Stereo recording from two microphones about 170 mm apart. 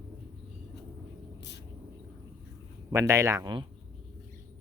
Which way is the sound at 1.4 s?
90° left.